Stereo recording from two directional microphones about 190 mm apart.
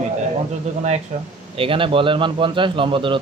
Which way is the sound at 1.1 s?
35° right (ahead or behind).